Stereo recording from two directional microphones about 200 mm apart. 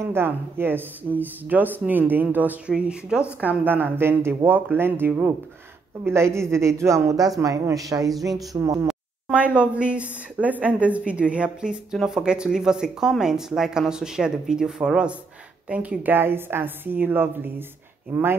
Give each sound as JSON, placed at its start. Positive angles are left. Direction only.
{"t": 0.1, "sound": "speech", "side_deg": -10}
{"t": 8.8, "sound": "speech", "side_deg": -5}